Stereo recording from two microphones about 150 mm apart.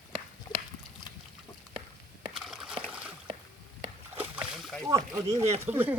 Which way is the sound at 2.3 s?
5° right (ahead or behind).